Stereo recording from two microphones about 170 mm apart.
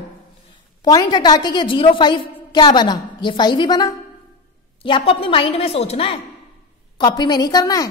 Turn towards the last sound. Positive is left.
turn(degrees=20)  # may be behind; listen again after turning